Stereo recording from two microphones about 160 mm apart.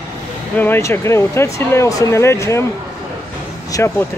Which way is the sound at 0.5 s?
15° left (ahead or behind).